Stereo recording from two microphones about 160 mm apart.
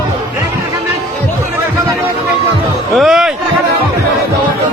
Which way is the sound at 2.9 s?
Centre (ahead or behind).